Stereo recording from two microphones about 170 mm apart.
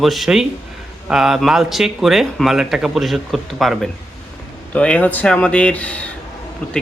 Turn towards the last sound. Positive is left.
turn(degrees=10)  # may be behind; listen again after turning